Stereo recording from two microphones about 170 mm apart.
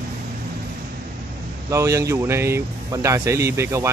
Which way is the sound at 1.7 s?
20° right (ahead or behind).